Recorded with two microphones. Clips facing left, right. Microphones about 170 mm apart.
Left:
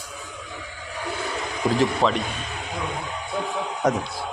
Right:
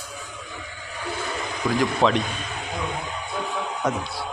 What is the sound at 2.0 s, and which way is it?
Speech, 5° left (ahead or behind).